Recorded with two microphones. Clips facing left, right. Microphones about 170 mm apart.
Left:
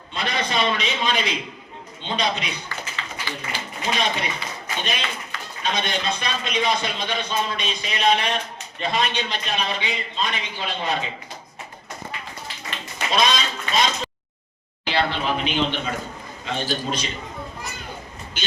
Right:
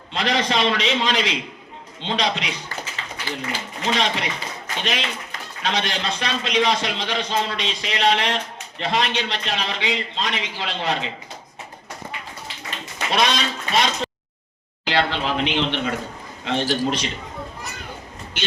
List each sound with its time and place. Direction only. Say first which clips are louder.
0.1 s a man's voice: right 4 dB; 85° right
2.9 s a sound: right 2 dB; 45° right (ahead or behind)
3.9 s a man's voice: right 1 dB; 85° right
13.1 s speech: even; 70° right (ahead or behind)
14.8 s a man's voice: right 1 dB; 90° right
16.4 s a man's voice: right 5 dB; 75° right (ahead or behind)
18.4 s speech: right 4 dB; 70° right (ahead or behind)